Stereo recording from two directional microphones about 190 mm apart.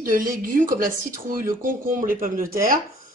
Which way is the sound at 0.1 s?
45° right (ahead or behind).